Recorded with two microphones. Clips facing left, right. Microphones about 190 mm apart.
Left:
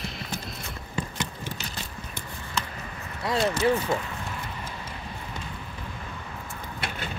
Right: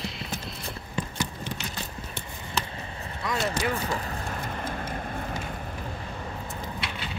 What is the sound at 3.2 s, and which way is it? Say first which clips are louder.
Speech: left 5 dB; 30° left (ahead or behind).